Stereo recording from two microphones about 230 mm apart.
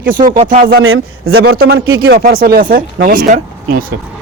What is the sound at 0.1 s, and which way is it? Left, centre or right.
Speech, right.